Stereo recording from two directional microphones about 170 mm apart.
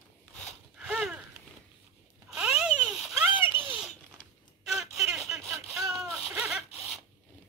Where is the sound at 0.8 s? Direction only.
5° right (ahead or behind).